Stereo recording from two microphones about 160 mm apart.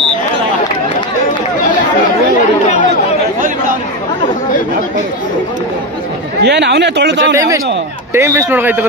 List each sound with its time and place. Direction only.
6.4 s speech: 90° right
7.3 s a man's voice: 20° right (ahead or behind)